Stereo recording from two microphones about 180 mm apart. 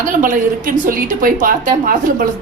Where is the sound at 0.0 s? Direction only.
50° right (ahead or behind).